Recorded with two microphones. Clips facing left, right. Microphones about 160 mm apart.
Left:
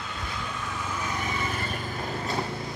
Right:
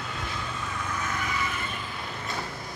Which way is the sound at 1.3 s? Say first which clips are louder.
Left 1 dB; 35° left (ahead or behind).